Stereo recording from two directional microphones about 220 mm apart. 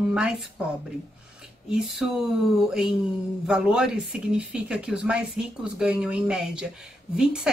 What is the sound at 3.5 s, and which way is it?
Speech, 5° right (ahead or behind).